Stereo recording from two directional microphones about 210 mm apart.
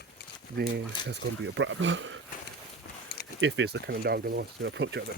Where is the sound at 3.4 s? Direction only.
60° right (ahead or behind).